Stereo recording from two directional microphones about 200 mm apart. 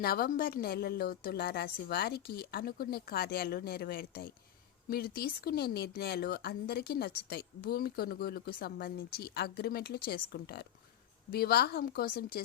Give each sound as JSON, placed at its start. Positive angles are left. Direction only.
{"t": 0.0, "sound": "speech", "side_deg": 50}